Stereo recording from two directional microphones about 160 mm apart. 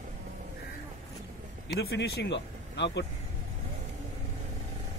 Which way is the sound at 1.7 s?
90° left.